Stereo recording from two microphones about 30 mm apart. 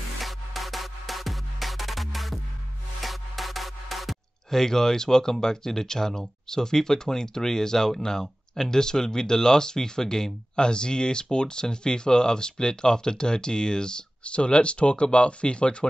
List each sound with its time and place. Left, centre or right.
0.2 s music: centre
4.5 s speech: centre; by 15.7 s left